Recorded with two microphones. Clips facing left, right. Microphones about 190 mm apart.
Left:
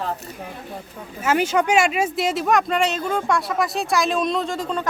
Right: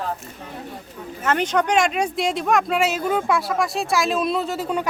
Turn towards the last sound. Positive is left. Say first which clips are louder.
# right 1 dB
turn(degrees=-10)  # may be behind; listen again after turning